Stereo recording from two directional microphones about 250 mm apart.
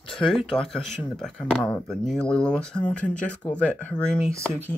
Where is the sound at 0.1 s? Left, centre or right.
Centre.